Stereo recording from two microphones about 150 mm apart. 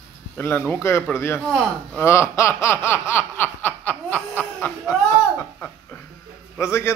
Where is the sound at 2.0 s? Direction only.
20° left (ahead or behind).